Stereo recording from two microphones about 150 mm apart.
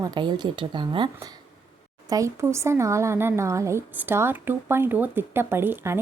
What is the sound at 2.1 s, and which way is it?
A woman's voice, 20° right (ahead or behind).